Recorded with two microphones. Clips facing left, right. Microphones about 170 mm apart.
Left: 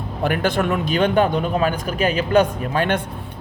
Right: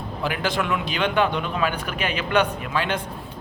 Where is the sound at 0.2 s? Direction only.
55° left (ahead or behind).